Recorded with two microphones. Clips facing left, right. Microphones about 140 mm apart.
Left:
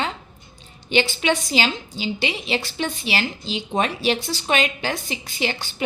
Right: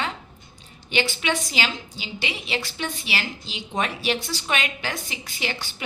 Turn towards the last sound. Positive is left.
turn(degrees=30)  # may be behind; listen again after turning